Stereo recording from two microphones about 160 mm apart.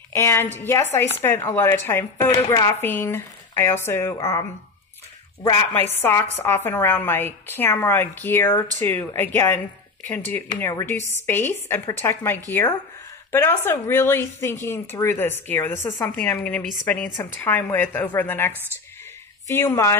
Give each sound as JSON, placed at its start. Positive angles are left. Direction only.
{"t": 0.1, "sound": "speech", "side_deg": 15}
{"t": 5.9, "sound": "speech", "side_deg": 15}